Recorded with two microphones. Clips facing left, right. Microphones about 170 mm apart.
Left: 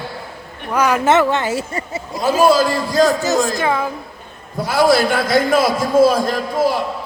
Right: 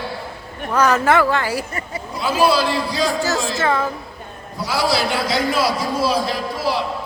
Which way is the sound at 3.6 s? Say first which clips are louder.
Left 1 dB; 10° left (ahead or behind).